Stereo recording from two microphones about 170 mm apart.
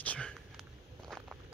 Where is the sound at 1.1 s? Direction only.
5° right (ahead or behind).